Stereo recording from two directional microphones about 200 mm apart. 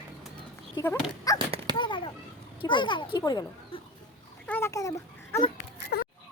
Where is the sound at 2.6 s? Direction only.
25° left (ahead or behind).